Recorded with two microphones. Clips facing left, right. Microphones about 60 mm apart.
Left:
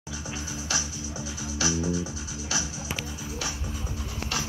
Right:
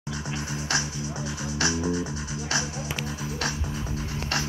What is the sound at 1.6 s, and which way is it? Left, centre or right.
Music, right.